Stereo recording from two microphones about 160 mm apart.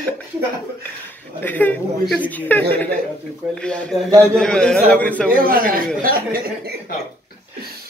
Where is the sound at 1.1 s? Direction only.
10° left (ahead or behind).